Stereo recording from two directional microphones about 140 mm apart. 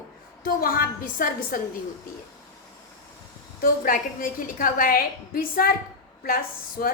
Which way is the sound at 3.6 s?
85° left.